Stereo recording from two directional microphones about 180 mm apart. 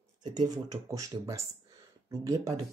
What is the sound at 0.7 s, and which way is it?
Speech, 20° right (ahead or behind).